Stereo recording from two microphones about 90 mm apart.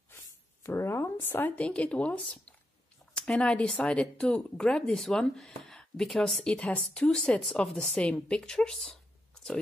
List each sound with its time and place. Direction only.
0.7 s speech: 30° left (ahead or behind); by 9.6 s 5° left (ahead or behind)